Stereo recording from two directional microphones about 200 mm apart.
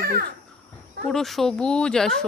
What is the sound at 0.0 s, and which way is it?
Babbling, 50° right (ahead or behind).